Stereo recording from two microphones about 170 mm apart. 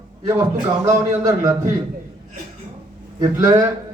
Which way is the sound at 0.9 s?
15° right (ahead or behind).